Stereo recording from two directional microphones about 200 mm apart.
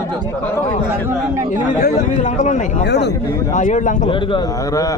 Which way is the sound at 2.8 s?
60° left (ahead or behind).